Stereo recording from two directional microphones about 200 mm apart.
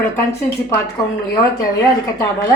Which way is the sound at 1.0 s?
20° left (ahead or behind).